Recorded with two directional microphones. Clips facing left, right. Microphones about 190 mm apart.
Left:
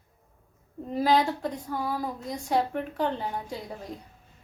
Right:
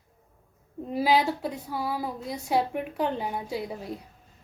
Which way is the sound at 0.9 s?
10° right (ahead or behind).